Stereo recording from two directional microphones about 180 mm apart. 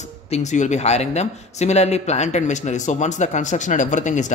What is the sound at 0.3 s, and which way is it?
Speech, 40° left (ahead or behind).